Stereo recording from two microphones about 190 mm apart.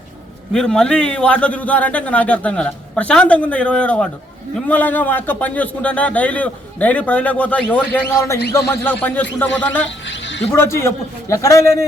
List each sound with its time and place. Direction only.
0.5 s a man's voice: 5° left (ahead or behind)
10.1 s a sound: 75° left (ahead or behind)
10.5 s a man's voice: 15° left (ahead or behind)